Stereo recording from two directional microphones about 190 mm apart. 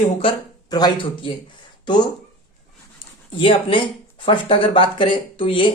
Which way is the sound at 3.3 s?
25° left (ahead or behind).